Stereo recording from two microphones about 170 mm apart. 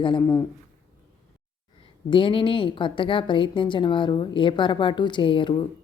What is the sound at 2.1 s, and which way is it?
A woman's voice, 30° left (ahead or behind).